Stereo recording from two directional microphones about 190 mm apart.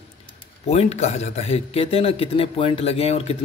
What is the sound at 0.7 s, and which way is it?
A man's voice, 35° left (ahead or behind).